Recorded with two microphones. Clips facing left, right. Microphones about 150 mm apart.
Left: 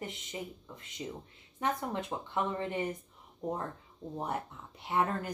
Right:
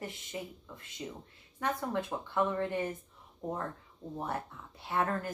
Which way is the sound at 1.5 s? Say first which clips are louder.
Even; 20° left (ahead or behind).